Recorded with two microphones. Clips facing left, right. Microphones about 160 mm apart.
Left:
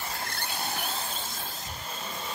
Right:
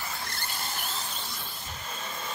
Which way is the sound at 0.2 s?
60° left (ahead or behind).